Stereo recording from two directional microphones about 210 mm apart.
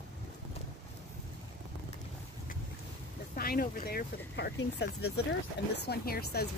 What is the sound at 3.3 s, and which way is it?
Speech, 45° left (ahead or behind).